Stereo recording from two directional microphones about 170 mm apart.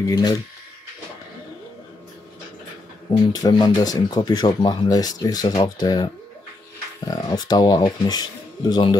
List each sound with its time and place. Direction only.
0.1 s speech: 20° left (ahead or behind)
3.3 s speech: 25° left (ahead or behind)
7.1 s speech: 25° left (ahead or behind)